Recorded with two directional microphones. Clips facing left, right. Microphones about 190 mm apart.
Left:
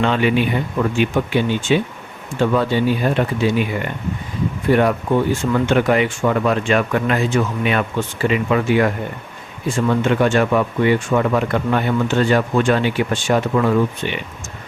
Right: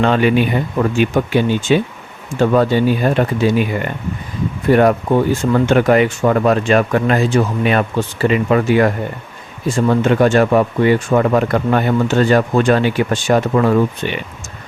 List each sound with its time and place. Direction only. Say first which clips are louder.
0.0 s speech: right 3 dB; 45° right (ahead or behind)
4.7 s speech: right 4 dB; 45° right (ahead or behind)